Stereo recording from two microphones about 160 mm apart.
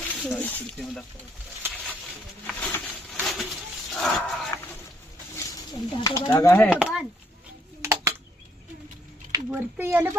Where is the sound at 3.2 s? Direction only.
Centre (ahead or behind).